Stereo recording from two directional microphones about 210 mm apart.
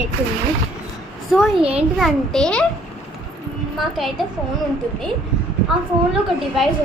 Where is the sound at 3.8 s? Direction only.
Centre (ahead or behind).